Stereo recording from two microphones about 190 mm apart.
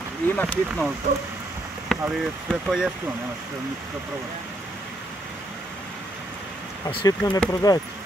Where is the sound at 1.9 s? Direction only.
Centre (ahead or behind).